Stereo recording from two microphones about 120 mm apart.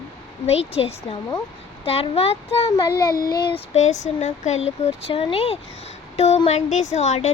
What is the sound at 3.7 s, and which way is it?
Speech, 85° left.